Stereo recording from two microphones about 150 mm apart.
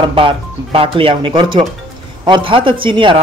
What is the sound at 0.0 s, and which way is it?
Speech, 35° right (ahead or behind).